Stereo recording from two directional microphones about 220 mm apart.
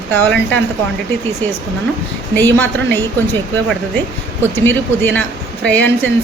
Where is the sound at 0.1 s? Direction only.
10° left (ahead or behind).